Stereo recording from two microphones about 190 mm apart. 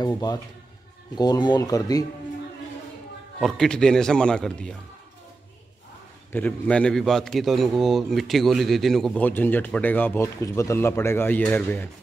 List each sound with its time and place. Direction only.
0.0 s speech: 20° left (ahead or behind)
3.3 s a man's voice: centre (ahead or behind)
6.3 s a man's voice: 5° left (ahead or behind)